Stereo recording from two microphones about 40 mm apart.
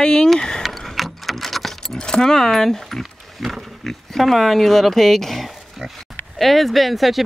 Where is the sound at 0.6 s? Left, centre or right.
Centre.